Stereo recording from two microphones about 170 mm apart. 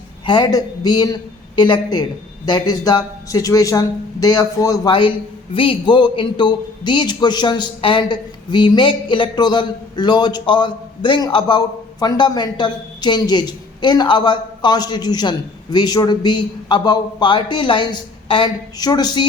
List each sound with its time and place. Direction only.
0.3 s a man's voice: 25° left (ahead or behind)